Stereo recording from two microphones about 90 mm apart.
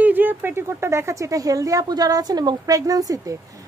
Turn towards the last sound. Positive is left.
turn(degrees=-40)  # may be behind; listen again after turning